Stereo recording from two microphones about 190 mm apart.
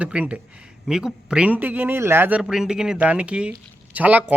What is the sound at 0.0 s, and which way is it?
A man's voice, 5° right (ahead or behind).